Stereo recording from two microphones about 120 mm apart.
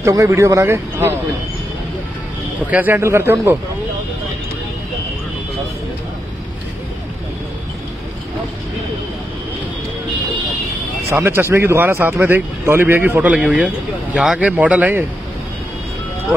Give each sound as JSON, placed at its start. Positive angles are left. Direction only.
{"t": 0.0, "sound": "speech", "side_deg": -25}
{"t": 2.7, "sound": "speech", "side_deg": -15}
{"t": 11.1, "sound": "a man's voice", "side_deg": -20}